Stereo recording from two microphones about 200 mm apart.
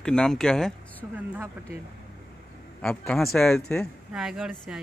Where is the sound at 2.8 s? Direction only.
5° left (ahead or behind).